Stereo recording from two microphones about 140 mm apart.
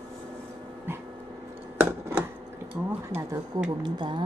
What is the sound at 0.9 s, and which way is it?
Dog, 15° right (ahead or behind).